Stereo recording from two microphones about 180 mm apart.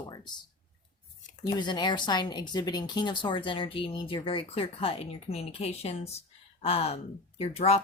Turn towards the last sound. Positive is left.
turn(degrees=35)  # may be behind; listen again after turning